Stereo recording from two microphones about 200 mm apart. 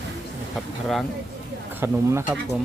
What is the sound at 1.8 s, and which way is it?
Speech, 15° right (ahead or behind).